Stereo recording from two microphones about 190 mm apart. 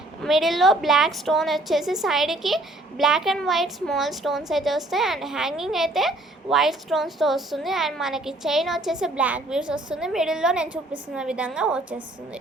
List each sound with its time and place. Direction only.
0.2 s a woman's voice: centre (ahead or behind)